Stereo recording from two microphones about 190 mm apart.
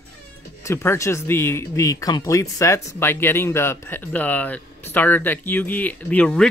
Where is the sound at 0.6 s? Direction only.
15° left (ahead or behind).